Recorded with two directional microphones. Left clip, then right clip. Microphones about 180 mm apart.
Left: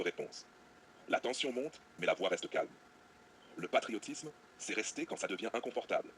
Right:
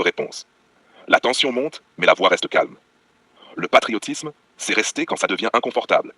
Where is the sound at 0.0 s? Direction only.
45° right (ahead or behind).